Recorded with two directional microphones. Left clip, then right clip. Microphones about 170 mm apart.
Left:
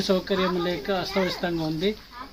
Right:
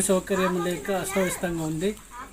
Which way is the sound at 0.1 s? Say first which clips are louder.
Even; 15° right (ahead or behind).